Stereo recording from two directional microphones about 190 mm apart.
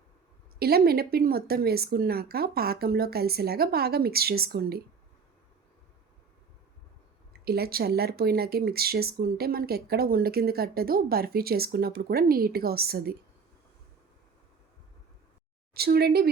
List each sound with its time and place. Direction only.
0.6 s speech: 55° right (ahead or behind)
7.4 s speech: 55° right (ahead or behind)
15.7 s a woman's voice: 55° right (ahead or behind)